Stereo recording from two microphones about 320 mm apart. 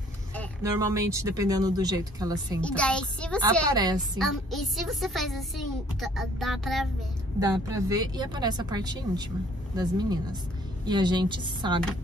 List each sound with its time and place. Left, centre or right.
0.6 s speech: centre
2.6 s a woman's voice: centre
3.7 s speech: centre
4.2 s a woman's voice: centre